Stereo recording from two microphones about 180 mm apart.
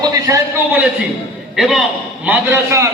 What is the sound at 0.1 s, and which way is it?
Speech, 20° right (ahead or behind).